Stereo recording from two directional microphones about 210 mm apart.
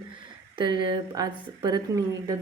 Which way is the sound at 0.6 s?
20° right (ahead or behind).